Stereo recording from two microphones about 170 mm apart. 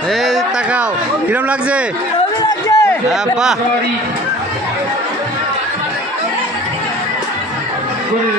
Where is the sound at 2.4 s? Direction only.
20° left (ahead or behind).